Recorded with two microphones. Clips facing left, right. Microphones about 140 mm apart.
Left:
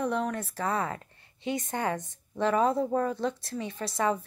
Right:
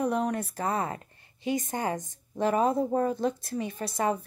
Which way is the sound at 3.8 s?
45° right (ahead or behind).